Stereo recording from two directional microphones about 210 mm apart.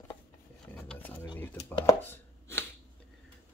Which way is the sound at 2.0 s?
10° left (ahead or behind).